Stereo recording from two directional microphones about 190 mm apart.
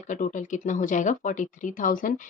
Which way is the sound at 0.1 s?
40° left (ahead or behind).